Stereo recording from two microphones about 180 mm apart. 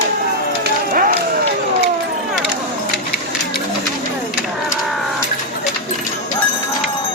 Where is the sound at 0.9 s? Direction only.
55° right (ahead or behind).